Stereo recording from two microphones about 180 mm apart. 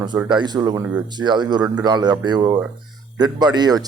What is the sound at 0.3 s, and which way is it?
A man's voice, 25° right (ahead or behind).